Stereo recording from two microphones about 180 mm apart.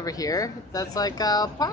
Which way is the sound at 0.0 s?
20° left (ahead or behind).